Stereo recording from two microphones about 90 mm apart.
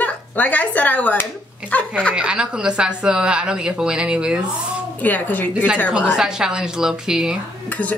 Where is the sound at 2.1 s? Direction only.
10° right (ahead or behind).